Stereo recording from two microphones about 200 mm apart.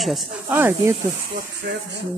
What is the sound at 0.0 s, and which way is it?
Speech, centre (ahead or behind).